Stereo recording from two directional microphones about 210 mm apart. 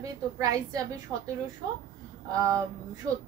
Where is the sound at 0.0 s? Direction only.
15° right (ahead or behind).